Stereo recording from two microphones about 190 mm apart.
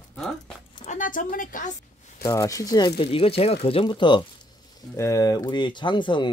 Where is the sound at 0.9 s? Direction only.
45° left (ahead or behind).